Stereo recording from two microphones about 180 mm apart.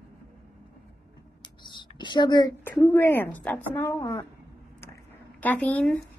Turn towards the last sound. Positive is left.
turn(degrees=5)  # may be behind; listen again after turning